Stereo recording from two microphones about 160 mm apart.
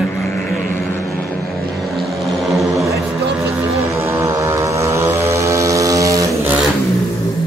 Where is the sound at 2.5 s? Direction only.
Centre (ahead or behind).